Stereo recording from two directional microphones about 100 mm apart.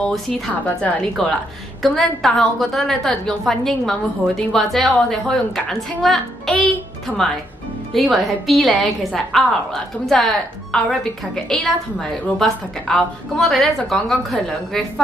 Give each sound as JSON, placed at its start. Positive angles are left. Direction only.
{"t": 0.7, "sound": "a woman's voice", "side_deg": 15}
{"t": 1.2, "sound": "a woman's voice", "side_deg": 5}